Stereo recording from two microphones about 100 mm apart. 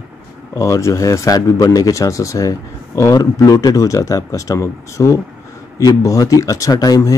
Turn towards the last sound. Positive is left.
turn(degrees=40)  # may be behind; listen again after turning